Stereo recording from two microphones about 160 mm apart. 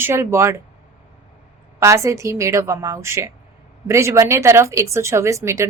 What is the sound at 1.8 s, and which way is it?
A woman's voice, 20° right (ahead or behind).